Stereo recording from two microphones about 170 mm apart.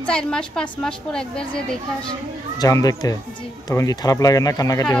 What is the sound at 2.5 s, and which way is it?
Speech, 20° left (ahead or behind).